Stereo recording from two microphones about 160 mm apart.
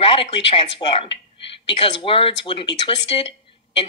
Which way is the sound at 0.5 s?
35° left (ahead or behind).